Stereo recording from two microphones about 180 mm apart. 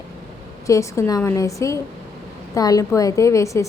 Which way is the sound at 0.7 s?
15° left (ahead or behind).